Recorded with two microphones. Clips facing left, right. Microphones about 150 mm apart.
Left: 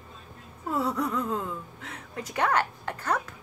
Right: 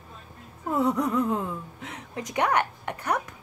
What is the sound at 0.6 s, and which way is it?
A woman's voice, 20° right (ahead or behind).